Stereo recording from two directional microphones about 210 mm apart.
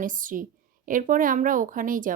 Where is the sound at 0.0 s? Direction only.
40° right (ahead or behind).